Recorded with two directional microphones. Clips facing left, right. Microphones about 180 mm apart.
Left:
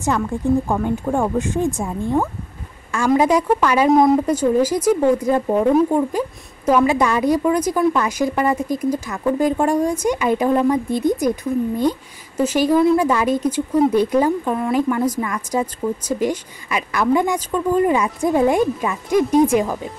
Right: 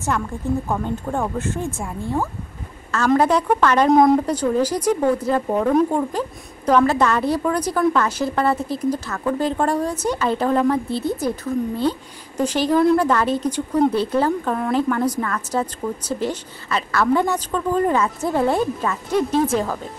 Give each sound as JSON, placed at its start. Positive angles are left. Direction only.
{"t": 0.7, "sound": "speech", "side_deg": 10}